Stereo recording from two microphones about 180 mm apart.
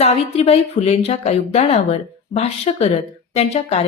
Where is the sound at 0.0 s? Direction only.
35° left (ahead or behind).